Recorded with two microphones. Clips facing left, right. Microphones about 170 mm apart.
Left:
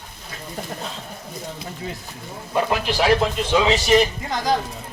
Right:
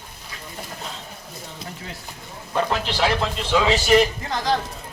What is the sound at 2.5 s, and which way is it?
A man's voice, 10° left (ahead or behind).